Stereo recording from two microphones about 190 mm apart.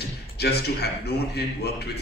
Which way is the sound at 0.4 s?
60° left (ahead or behind).